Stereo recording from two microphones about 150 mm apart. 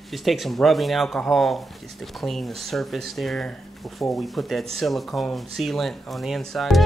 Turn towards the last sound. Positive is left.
turn(degrees=0)  # may be behind; listen again after turning